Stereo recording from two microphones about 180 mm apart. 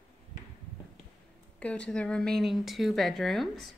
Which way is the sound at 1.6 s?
5° left (ahead or behind).